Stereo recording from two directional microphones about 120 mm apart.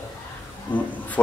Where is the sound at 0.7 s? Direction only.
40° left (ahead or behind).